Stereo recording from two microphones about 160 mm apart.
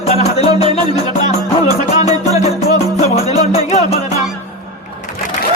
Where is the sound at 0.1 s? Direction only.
40° left (ahead or behind).